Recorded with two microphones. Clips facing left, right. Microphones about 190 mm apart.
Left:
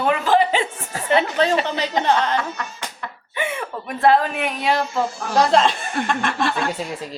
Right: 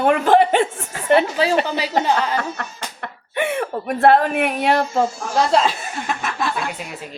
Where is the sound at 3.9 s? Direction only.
55° right (ahead or behind).